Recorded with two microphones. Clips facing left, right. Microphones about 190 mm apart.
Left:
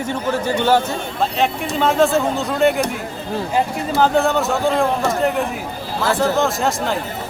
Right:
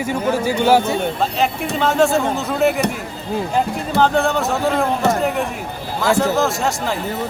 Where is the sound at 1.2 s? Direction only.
Centre (ahead or behind).